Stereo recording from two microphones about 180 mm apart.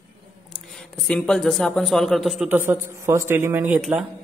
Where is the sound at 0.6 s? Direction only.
Centre (ahead or behind).